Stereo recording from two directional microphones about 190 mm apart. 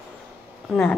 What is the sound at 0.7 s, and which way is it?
Speech, 10° left (ahead or behind).